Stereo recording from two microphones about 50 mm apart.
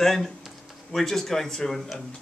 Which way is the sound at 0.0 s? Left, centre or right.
Centre.